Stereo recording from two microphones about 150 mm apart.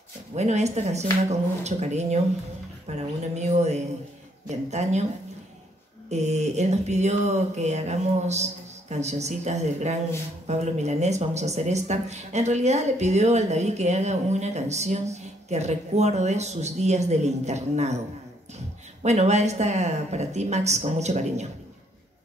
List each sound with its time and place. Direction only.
0.4 s speech: 50° right (ahead or behind)
6.0 s speech: 50° right (ahead or behind)
19.0 s speech: 50° right (ahead or behind)